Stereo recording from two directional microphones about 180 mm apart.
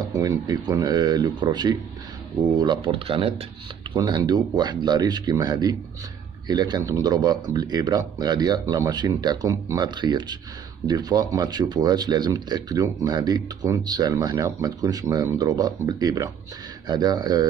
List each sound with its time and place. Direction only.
0.1 s speech: 20° right (ahead or behind)